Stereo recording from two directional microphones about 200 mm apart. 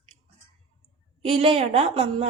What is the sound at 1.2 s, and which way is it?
A woman's voice, 30° right (ahead or behind).